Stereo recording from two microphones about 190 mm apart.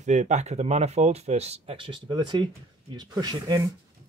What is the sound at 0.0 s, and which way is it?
Speech, 40° right (ahead or behind).